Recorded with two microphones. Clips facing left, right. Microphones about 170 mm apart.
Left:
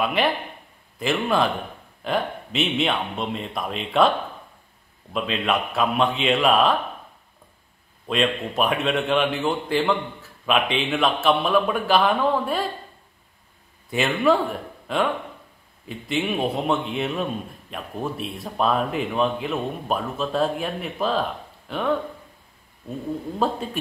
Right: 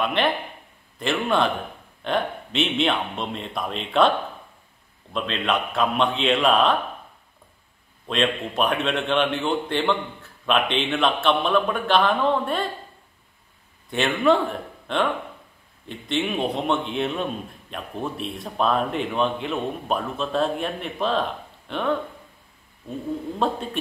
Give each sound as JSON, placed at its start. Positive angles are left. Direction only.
{"t": 0.0, "sound": "a man's voice", "side_deg": 5}
{"t": 5.1, "sound": "a man's voice", "side_deg": 5}
{"t": 8.1, "sound": "a man's voice", "side_deg": 0}
{"t": 13.8, "sound": "a man's voice", "side_deg": 5}
{"t": 23.4, "sound": "a man's voice", "side_deg": 5}